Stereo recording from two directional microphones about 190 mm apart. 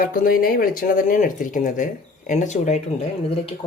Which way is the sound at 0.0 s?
50° left (ahead or behind).